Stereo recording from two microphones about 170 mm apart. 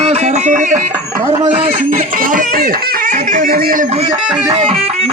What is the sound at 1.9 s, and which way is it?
Speech, 55° right (ahead or behind).